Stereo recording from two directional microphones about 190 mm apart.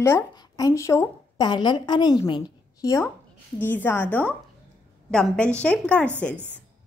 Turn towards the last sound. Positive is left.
turn(degrees=5)  # may be behind; listen again after turning